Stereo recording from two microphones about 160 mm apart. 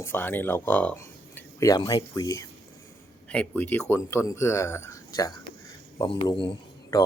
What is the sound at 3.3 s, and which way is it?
Speech, 10° left (ahead or behind).